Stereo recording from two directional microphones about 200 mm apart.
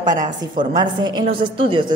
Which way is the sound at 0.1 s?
40° right (ahead or behind).